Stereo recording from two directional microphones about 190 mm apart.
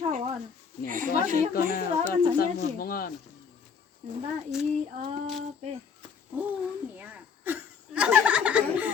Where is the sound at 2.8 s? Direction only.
50° left (ahead or behind).